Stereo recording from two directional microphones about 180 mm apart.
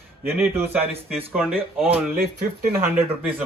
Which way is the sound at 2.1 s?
55° right (ahead or behind).